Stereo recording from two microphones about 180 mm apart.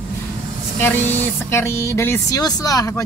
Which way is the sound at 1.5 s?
15° left (ahead or behind).